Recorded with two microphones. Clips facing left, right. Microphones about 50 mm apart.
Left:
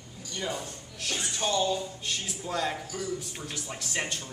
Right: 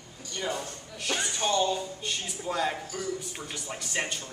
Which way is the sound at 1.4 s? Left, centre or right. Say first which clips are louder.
Even; centre.